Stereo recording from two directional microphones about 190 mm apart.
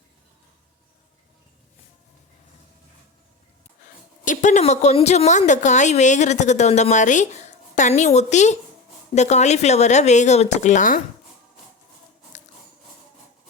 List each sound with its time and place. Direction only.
4.3 s a woman's voice: 40° left (ahead or behind)